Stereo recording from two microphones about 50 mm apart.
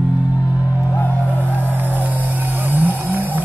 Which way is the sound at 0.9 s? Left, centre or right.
Left.